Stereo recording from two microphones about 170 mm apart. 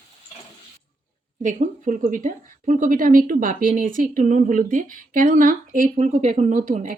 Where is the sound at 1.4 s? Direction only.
50° right (ahead or behind).